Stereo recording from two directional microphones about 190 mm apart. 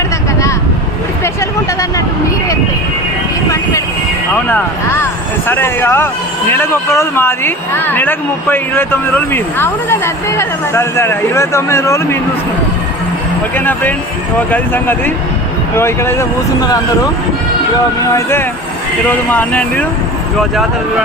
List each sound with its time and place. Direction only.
1.2 s a sound: 15° left (ahead or behind)
4.4 s speech: 10° left (ahead or behind)
14.3 s speech: 10° left (ahead or behind)
18.1 s speech: 10° left (ahead or behind)